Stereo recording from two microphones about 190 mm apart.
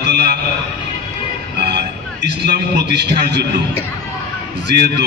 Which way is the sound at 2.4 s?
60° right (ahead or behind).